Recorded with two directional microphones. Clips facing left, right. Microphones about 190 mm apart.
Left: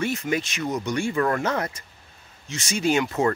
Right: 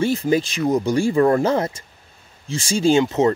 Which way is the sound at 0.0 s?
30° right (ahead or behind).